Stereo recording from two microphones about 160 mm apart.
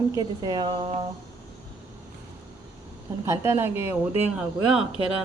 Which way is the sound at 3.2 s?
15° right (ahead or behind).